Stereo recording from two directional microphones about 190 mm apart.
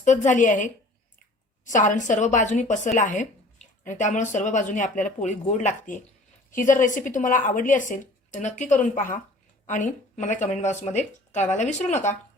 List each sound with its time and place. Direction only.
0.0 s speech: 40° left (ahead or behind)